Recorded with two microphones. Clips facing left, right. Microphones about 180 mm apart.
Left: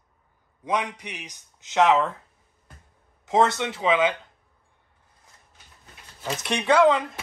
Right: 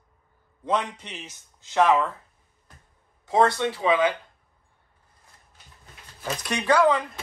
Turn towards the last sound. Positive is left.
turn(degrees=25)  # may be behind; listen again after turning